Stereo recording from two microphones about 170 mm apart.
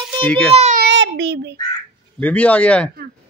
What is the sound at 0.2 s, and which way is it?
Speech, 10° left (ahead or behind).